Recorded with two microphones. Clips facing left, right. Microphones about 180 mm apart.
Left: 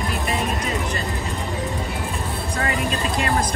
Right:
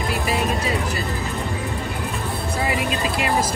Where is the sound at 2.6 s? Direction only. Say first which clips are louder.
Right 1 dB; 5° right (ahead or behind).